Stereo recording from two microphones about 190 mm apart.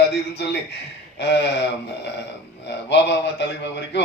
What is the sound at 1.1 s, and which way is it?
Speech, 65° left (ahead or behind).